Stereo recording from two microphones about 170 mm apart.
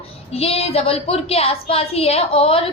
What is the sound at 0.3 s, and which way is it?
A woman's voice, 35° left (ahead or behind).